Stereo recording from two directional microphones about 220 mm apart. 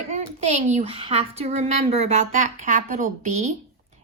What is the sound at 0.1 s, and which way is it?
Speech, 35° right (ahead or behind).